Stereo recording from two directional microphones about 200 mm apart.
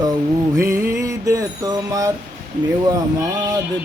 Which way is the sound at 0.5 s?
15° right (ahead or behind).